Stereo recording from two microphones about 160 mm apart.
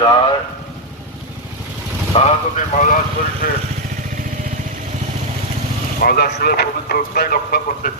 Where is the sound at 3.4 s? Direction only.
60° left (ahead or behind).